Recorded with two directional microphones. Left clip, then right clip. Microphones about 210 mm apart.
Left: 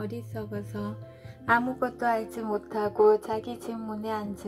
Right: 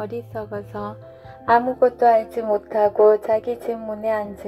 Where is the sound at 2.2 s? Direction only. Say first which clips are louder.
Right 10 dB; 15° left (ahead or behind).